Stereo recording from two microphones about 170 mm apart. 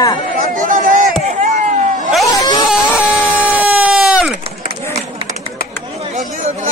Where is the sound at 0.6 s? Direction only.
50° right (ahead or behind).